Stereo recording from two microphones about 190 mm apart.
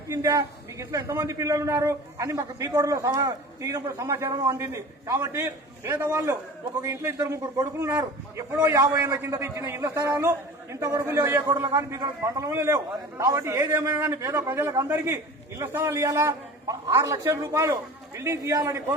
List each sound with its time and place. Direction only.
0.1 s a man's voice: 15° right (ahead or behind)